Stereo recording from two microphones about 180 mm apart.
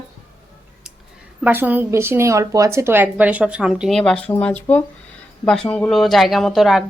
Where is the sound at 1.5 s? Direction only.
10° right (ahead or behind).